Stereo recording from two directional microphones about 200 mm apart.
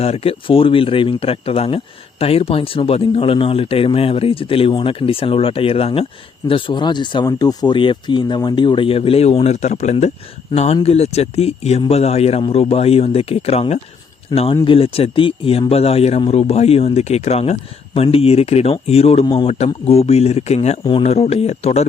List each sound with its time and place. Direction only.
0.0 s speech: 30° left (ahead or behind)